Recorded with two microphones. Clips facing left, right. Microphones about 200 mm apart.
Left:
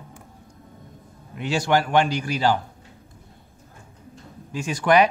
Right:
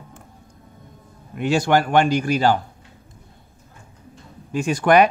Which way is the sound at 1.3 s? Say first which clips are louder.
Right 3 dB; 50° right (ahead or behind).